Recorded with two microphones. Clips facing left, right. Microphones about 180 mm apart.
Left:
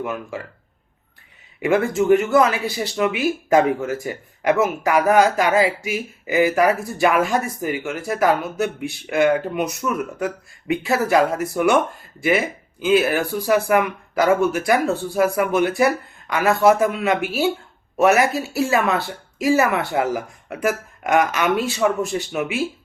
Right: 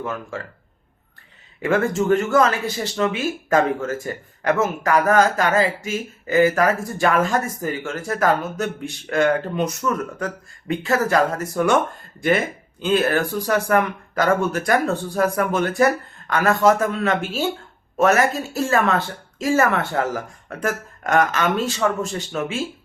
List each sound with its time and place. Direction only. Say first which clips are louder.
0.0 s speech: left 1 dB; 15° left (ahead or behind)
1.6 s speech: left 2 dB; 15° left (ahead or behind)